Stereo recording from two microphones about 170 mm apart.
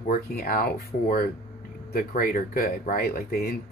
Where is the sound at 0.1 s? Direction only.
60° left (ahead or behind).